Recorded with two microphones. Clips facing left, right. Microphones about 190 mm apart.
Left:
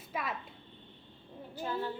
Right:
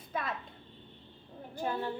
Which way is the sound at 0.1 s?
10° left (ahead or behind).